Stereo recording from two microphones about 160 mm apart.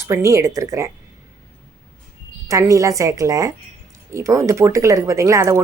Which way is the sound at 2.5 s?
20° right (ahead or behind).